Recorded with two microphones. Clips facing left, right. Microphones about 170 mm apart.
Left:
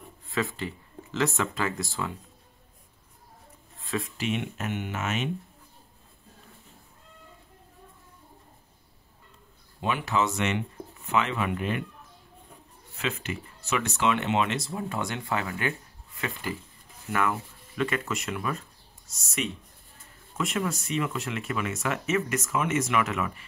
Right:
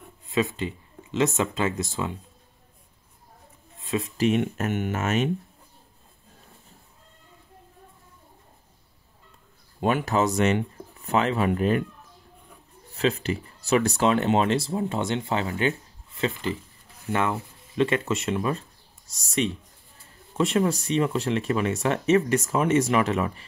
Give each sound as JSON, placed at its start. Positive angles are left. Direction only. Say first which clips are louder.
{"t": 0.3, "sound": "speech", "louder": "right 5 dB", "side_deg": -20}
{"t": 3.8, "sound": "speech", "louder": "right 4 dB", "side_deg": -20}
{"t": 4.2, "sound": "speech", "louder": "right 8 dB", "side_deg": -45}
{"t": 9.8, "sound": "speech", "louder": "right 4 dB", "side_deg": -45}
{"t": 12.9, "sound": "speech", "louder": "right 8 dB", "side_deg": -35}